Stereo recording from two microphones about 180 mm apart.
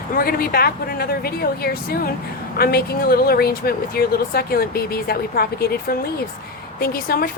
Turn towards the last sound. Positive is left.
turn(degrees=55)  # may be behind; listen again after turning